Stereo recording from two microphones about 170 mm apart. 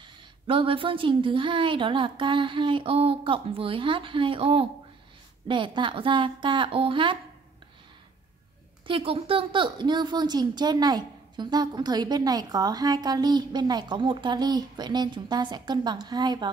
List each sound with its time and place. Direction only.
0.0 s speech: 30° right (ahead or behind)
8.8 s speech: 30° right (ahead or behind)